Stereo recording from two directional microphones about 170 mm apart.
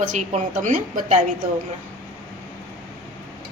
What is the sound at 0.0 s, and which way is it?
Speech, 50° right (ahead or behind).